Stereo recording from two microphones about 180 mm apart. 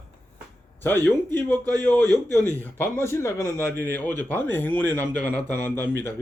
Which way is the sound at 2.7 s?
15° left (ahead or behind).